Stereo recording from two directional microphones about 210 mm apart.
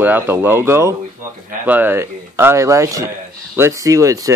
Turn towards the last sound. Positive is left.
turn(degrees=-15)  # may be behind; listen again after turning